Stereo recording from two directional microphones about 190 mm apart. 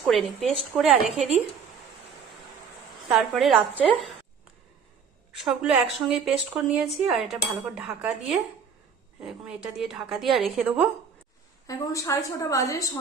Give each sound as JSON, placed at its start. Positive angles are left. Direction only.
{"t": 0.1, "sound": "a woman's voice", "side_deg": 0}
{"t": 3.1, "sound": "a woman's voice", "side_deg": 0}
{"t": 5.3, "sound": "a woman's voice", "side_deg": 0}
{"t": 11.6, "sound": "a woman's voice", "side_deg": 15}